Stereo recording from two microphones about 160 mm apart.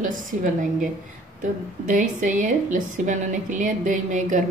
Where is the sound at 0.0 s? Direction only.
55° right (ahead or behind).